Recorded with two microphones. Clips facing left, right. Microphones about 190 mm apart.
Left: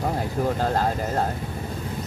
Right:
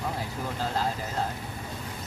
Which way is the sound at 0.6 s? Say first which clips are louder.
Left 6 dB; 50° left (ahead or behind).